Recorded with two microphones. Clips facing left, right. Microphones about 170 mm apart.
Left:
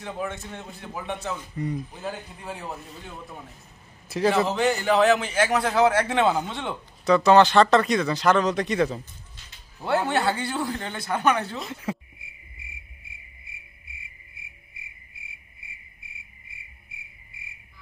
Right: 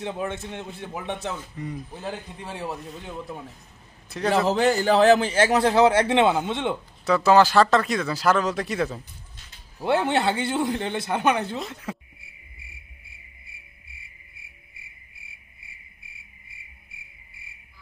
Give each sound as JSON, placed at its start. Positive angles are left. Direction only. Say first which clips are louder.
{"t": 0.0, "sound": "a man's voice", "louder": "right 2 dB", "side_deg": -25}
{"t": 1.6, "sound": "speech", "louder": "left 4 dB", "side_deg": 5}
{"t": 4.5, "sound": "a man's voice", "louder": "right 3 dB", "side_deg": -35}
{"t": 7.1, "sound": "speech", "louder": "left 1 dB", "side_deg": -5}
{"t": 9.8, "sound": "a man's voice", "louder": "right 2 dB", "side_deg": -20}
{"t": 11.6, "sound": "speech", "louder": "left 2 dB", "side_deg": 0}